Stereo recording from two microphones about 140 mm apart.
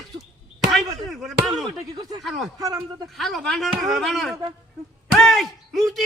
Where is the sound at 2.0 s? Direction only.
30° right (ahead or behind).